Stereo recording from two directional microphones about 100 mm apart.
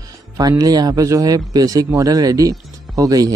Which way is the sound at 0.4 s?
40° right (ahead or behind).